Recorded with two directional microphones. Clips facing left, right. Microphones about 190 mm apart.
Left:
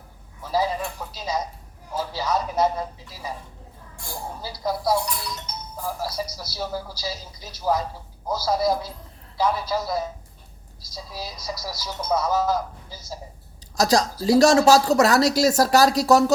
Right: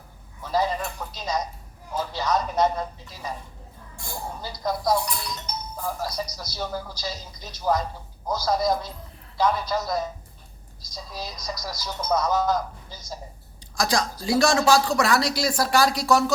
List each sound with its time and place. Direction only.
0.4 s a sound: 5° left (ahead or behind)
1.9 s speech: 5° left (ahead or behind)
13.7 s speech: 40° left (ahead or behind)